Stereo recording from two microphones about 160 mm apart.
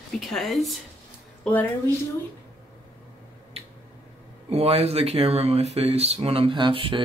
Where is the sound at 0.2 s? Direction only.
Centre (ahead or behind).